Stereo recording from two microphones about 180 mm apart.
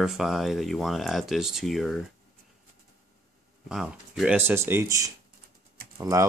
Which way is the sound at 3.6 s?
5° right (ahead or behind).